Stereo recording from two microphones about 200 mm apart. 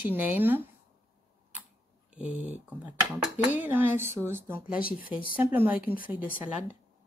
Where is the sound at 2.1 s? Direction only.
5° right (ahead or behind).